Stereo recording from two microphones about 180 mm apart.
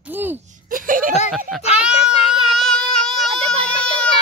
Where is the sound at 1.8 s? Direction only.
5° right (ahead or behind).